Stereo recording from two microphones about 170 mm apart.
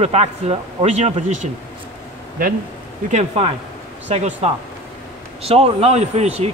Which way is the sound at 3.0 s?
40° right (ahead or behind).